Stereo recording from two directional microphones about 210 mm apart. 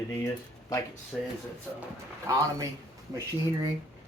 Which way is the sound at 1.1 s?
Centre (ahead or behind).